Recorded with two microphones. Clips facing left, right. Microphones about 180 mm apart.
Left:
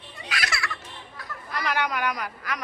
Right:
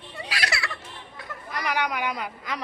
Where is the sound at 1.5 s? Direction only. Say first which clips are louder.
Even; 15° right (ahead or behind).